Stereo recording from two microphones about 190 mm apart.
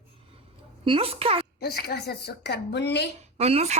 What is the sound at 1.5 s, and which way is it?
A woman's voice, 55° left (ahead or behind).